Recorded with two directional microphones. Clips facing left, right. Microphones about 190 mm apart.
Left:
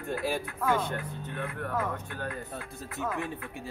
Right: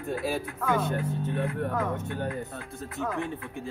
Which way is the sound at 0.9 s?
25° right (ahead or behind).